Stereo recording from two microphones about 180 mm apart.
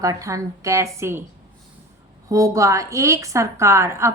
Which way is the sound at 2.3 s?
20° right (ahead or behind).